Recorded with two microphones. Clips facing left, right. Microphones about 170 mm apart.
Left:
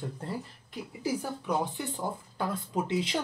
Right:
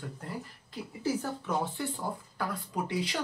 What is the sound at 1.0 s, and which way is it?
Speech, 10° left (ahead or behind).